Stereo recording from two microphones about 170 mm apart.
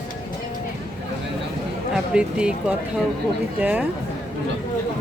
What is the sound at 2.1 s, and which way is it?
Speech, 5° right (ahead or behind).